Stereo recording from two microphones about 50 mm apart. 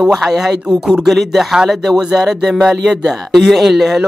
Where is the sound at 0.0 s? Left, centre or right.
Centre.